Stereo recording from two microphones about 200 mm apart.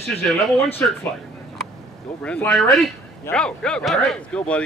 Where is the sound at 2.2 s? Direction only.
5° left (ahead or behind).